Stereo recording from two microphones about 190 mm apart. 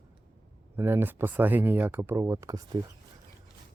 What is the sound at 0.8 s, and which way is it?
Speech, 10° right (ahead or behind).